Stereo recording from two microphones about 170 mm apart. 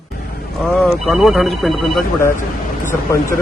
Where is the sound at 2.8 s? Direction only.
15° left (ahead or behind).